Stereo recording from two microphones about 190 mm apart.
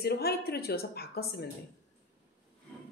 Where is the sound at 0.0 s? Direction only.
55° left (ahead or behind).